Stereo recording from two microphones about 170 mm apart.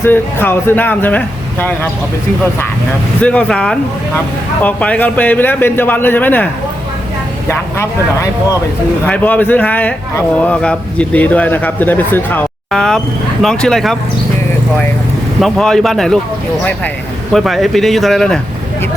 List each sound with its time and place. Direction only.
0.0 s speech: 10° left (ahead or behind)
3.2 s speech: 5° left (ahead or behind)
15.4 s speech: centre (ahead or behind)
17.3 s speech: centre (ahead or behind)